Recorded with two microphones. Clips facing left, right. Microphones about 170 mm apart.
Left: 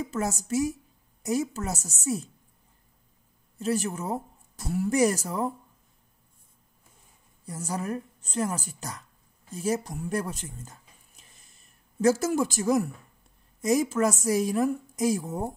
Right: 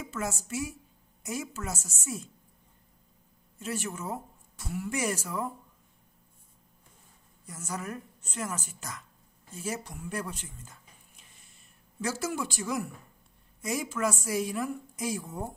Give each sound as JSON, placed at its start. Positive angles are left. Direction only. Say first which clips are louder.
{"t": 0.0, "sound": "a woman's voice", "louder": "left 5 dB", "side_deg": 40}
{"t": 3.5, "sound": "speech", "louder": "left 7 dB", "side_deg": 35}
{"t": 7.4, "sound": "a woman's voice", "louder": "left 6 dB", "side_deg": 35}